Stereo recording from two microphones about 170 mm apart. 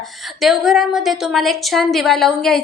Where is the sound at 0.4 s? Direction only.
Centre (ahead or behind).